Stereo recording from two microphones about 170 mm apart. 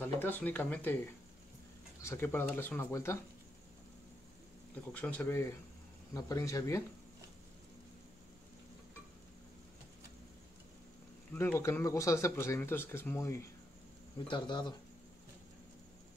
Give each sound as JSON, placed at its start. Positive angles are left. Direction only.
{"t": 0.0, "sound": "speech", "side_deg": 10}
{"t": 2.0, "sound": "speech", "side_deg": 15}
{"t": 4.9, "sound": "speech", "side_deg": 10}
{"t": 11.3, "sound": "speech", "side_deg": 15}
{"t": 14.2, "sound": "speech", "side_deg": 30}